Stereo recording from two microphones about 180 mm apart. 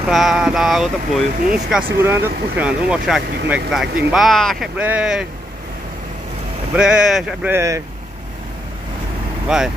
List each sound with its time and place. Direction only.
0.0 s speech: centre (ahead or behind)
6.7 s speech: 5° right (ahead or behind)
7.5 s speech: 15° right (ahead or behind)
9.5 s speech: 5° right (ahead or behind)